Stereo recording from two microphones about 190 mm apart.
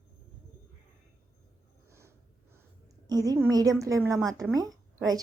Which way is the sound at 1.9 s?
15° right (ahead or behind).